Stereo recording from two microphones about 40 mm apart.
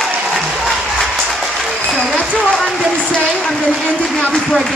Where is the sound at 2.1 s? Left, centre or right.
Left.